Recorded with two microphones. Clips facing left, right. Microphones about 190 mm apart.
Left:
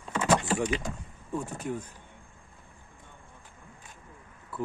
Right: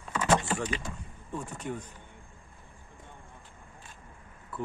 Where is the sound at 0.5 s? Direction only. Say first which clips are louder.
Left 4 dB; 10° left (ahead or behind).